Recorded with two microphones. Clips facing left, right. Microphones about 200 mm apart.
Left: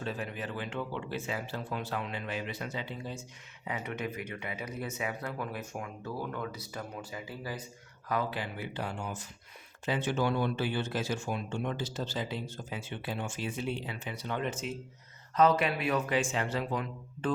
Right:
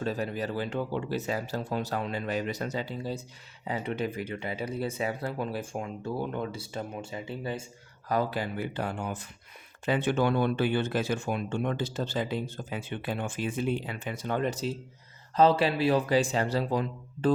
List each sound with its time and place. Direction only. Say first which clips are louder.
0.0 s speech: right 6 dB; 40° right (ahead or behind)
8.1 s speech: right 5 dB; 40° right (ahead or behind)